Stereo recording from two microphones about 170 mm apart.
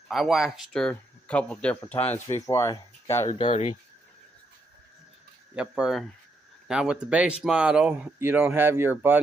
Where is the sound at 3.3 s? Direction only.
35° left (ahead or behind).